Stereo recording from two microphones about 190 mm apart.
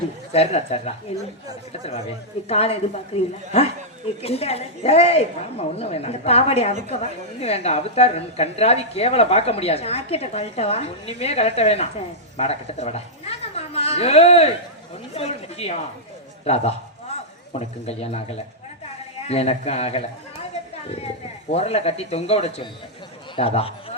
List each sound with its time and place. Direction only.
0.3 s a woman's voice: 35° left (ahead or behind)
4.2 s a woman's voice: 30° left (ahead or behind)
21.5 s a woman's voice: 35° left (ahead or behind)